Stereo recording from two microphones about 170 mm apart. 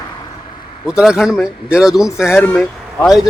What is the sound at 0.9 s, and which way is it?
Speech, 5° right (ahead or behind).